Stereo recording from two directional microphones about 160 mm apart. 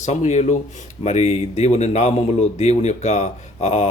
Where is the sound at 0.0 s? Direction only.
45° left (ahead or behind).